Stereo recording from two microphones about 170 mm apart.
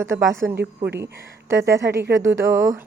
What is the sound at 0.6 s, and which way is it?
Speech, 80° right.